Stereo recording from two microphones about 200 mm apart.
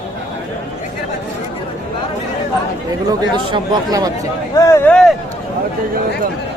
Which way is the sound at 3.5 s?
20° right (ahead or behind).